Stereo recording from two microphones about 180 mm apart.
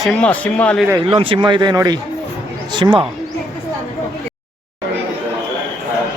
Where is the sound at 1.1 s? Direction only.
30° right (ahead or behind).